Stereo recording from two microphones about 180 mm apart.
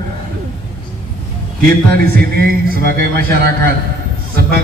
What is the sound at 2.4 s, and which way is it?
A man's voice, 55° right (ahead or behind).